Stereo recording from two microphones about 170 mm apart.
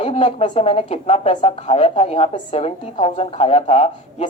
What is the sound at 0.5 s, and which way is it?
A woman's voice, 35° left (ahead or behind).